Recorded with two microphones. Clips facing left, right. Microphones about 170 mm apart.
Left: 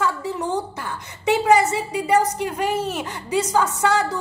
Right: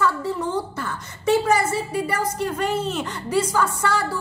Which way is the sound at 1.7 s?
15° left (ahead or behind).